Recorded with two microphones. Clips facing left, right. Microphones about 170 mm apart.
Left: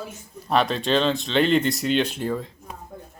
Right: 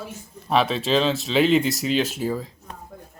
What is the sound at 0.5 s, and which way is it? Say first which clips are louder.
Speech: right 1 dB; centre (ahead or behind).